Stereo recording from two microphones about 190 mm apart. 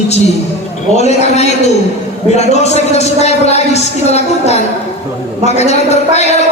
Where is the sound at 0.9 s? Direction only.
35° left (ahead or behind).